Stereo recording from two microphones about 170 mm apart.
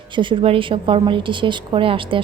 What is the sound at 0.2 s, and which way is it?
A woman's voice, 30° right (ahead or behind).